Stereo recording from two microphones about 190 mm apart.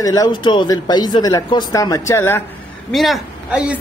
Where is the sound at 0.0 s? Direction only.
20° left (ahead or behind).